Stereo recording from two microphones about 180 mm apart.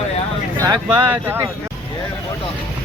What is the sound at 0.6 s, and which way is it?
Speech, 20° right (ahead or behind).